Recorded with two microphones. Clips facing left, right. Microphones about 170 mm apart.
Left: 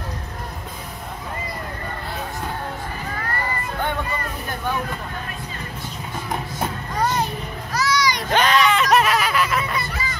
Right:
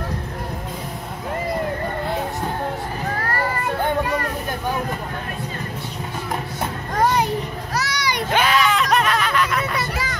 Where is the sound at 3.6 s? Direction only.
75° right (ahead or behind).